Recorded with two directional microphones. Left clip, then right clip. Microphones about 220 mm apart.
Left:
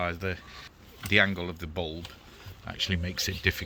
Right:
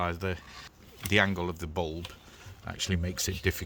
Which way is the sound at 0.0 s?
55° right (ahead or behind).